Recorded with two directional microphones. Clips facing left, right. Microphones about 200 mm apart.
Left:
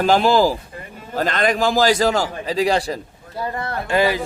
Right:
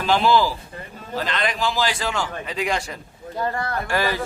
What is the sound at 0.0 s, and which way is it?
A man's voice, 45° left (ahead or behind).